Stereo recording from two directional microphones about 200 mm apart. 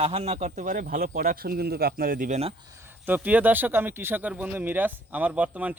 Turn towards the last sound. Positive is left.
turn(degrees=-5)  # may be behind; listen again after turning